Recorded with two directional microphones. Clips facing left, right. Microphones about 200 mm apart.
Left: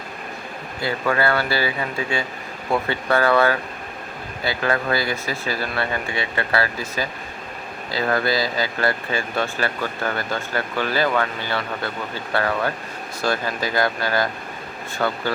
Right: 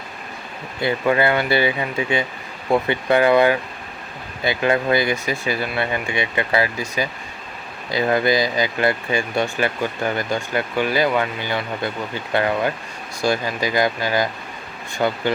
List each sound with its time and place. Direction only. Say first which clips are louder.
0.8 s speech: right 3 dB; 20° right (ahead or behind)